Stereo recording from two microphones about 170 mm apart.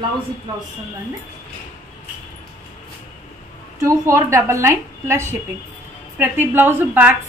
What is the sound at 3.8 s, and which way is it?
A woman's voice, 15° right (ahead or behind).